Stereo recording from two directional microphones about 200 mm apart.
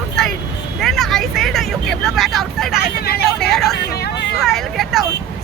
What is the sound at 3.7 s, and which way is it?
Speech, 55° left (ahead or behind).